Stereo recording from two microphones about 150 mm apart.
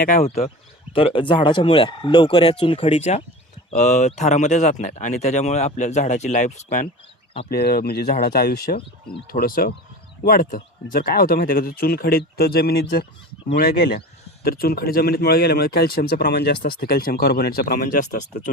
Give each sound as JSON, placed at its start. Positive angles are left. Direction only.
{"t": 0.2, "sound": "speech", "side_deg": 45}
{"t": 7.5, "sound": "speech", "side_deg": 90}
{"t": 9.2, "sound": "speech", "side_deg": 75}
{"t": 10.9, "sound": "speech", "side_deg": 90}